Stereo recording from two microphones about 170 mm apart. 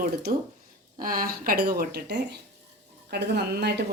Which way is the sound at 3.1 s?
75° right (ahead or behind).